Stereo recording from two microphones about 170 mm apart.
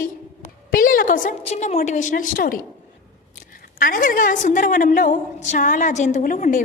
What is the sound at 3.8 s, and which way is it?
A woman's voice, 55° left (ahead or behind).